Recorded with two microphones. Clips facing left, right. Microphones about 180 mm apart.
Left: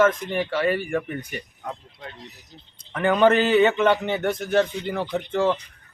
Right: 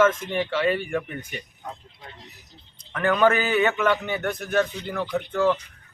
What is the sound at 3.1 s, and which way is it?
A man's voice, 20° left (ahead or behind).